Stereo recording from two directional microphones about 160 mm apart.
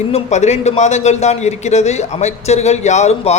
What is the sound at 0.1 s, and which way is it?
A man's voice, 45° left (ahead or behind).